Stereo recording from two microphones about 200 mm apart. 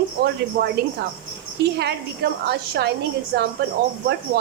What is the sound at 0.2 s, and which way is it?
Speech, 55° right (ahead or behind).